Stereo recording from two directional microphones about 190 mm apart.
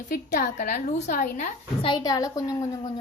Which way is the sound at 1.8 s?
20° left (ahead or behind).